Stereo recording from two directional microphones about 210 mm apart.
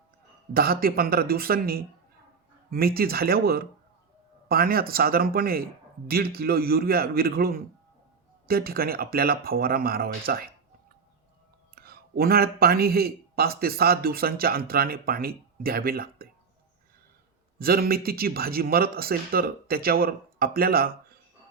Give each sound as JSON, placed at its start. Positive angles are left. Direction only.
{"t": 0.5, "sound": "speech", "side_deg": -45}
{"t": 11.7, "sound": "a man's voice", "side_deg": -50}
{"t": 17.6, "sound": "speech", "side_deg": -45}